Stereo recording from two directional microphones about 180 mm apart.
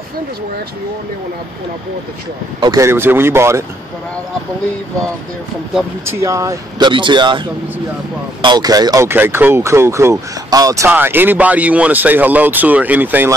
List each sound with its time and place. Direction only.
2.6 s speech: 20° right (ahead or behind)
6.0 s speech: 15° right (ahead or behind)